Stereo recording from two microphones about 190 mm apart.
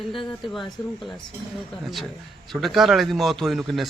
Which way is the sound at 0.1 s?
25° left (ahead or behind).